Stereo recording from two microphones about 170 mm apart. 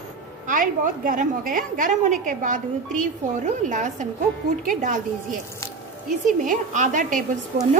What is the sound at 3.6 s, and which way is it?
A woman's voice, 45° right (ahead or behind).